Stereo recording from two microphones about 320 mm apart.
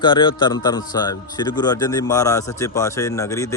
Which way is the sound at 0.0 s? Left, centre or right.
Centre.